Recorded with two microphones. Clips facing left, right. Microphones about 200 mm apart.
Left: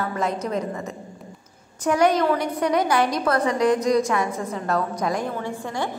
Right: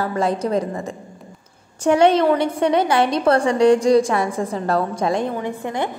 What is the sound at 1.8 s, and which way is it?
A woman's voice, 25° right (ahead or behind).